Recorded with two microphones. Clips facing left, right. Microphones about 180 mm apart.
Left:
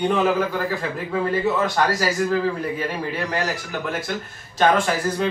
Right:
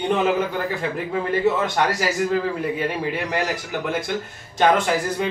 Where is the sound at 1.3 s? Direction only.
20° right (ahead or behind).